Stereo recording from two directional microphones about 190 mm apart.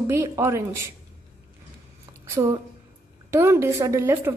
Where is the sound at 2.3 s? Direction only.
15° right (ahead or behind).